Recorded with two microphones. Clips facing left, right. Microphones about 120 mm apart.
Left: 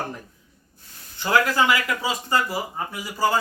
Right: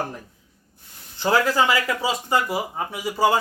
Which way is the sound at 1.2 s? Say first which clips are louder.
Right 1 dB; 30° right (ahead or behind).